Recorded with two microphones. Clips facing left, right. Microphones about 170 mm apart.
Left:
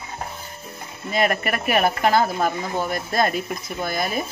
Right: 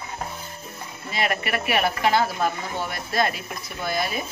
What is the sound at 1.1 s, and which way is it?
Speech, 45° left (ahead or behind).